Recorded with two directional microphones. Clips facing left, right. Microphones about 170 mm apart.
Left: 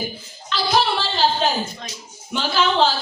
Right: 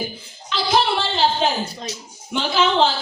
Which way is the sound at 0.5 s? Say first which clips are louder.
Right 1 dB; 20° right (ahead or behind).